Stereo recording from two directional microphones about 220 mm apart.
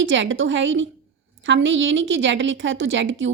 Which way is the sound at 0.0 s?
60° right (ahead or behind).